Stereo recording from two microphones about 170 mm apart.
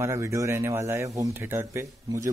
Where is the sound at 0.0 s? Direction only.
15° right (ahead or behind).